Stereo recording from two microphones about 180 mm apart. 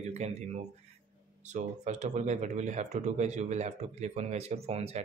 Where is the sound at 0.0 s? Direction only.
40° right (ahead or behind).